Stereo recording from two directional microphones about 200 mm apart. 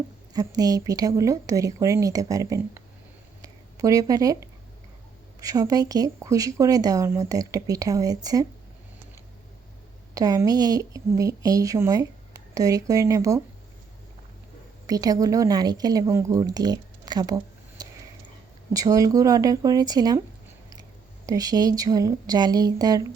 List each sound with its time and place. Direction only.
0.3 s speech: 20° right (ahead or behind)
10.2 s speech: 20° right (ahead or behind)
14.8 s speech: 20° right (ahead or behind)
21.2 s speech: 20° right (ahead or behind)